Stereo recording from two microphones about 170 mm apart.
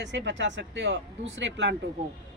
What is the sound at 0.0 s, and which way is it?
Speech, 90° right.